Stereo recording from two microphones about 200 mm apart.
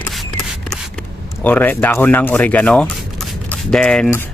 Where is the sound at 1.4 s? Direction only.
10° left (ahead or behind).